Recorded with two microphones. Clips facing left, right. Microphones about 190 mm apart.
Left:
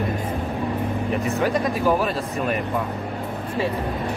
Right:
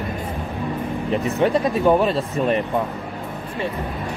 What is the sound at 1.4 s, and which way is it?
Speech, 25° right (ahead or behind).